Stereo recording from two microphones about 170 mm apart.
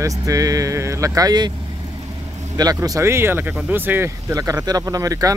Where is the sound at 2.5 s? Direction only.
20° right (ahead or behind).